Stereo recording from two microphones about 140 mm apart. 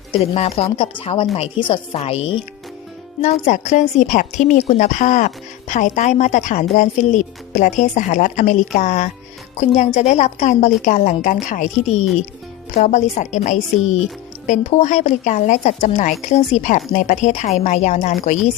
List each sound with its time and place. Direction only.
0.1 s a woman's voice: 45° left (ahead or behind)
3.2 s a woman's voice: 55° left (ahead or behind)